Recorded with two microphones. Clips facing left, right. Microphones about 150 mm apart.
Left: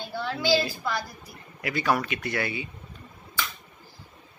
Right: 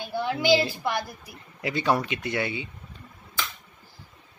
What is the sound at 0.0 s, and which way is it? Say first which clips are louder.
A woman's voice: right 3 dB; 15° right (ahead or behind).